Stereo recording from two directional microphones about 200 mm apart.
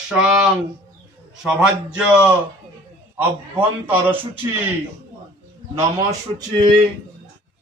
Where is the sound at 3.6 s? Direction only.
10° right (ahead or behind).